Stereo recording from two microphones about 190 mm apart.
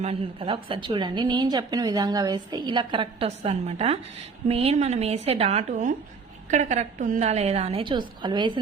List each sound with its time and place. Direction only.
0.0 s a woman's voice: 30° right (ahead or behind)